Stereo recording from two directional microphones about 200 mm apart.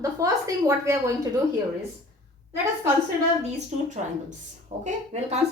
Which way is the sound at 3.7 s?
35° right (ahead or behind).